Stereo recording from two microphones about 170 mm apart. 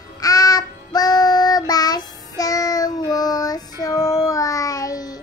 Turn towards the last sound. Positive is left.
turn(degrees=20)  # may be behind; listen again after turning